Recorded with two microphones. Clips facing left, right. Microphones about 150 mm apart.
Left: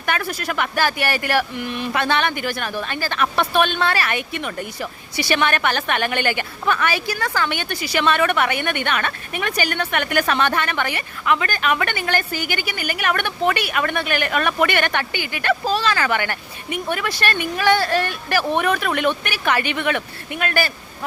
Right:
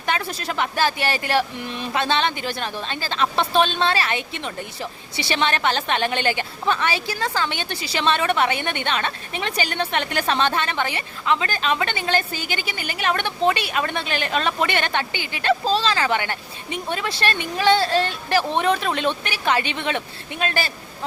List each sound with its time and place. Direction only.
0.0 s a woman's voice: 25° right (ahead or behind)